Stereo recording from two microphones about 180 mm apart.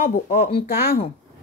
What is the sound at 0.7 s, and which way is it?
Speech, 60° left (ahead or behind).